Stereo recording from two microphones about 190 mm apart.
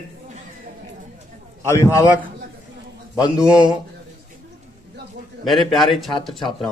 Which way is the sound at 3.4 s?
5° right (ahead or behind).